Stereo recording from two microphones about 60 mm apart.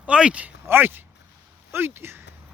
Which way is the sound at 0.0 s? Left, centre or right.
Centre.